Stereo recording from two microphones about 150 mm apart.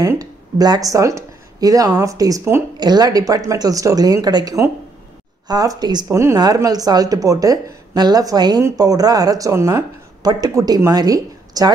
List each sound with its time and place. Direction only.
0.0 s speech: 20° right (ahead or behind)